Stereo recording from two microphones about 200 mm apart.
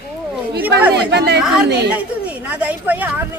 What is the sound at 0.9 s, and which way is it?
Speech, 55° right (ahead or behind).